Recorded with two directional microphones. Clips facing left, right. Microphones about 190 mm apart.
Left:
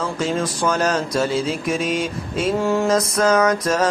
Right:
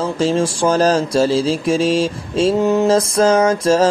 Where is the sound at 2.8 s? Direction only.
30° right (ahead or behind).